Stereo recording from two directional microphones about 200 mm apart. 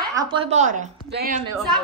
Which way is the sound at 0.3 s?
35° right (ahead or behind).